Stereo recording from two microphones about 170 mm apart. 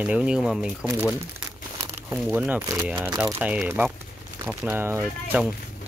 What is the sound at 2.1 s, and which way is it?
Speech, 10° right (ahead or behind).